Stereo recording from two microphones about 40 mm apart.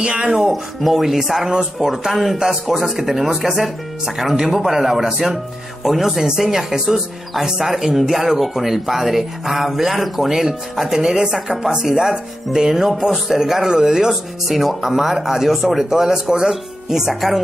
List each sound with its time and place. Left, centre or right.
0.0 s music: right
0.4 s speech: centre
1.5 s speech: centre
14.5 s speech: centre